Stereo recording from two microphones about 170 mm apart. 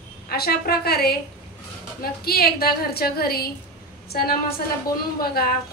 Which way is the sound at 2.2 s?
65° left (ahead or behind).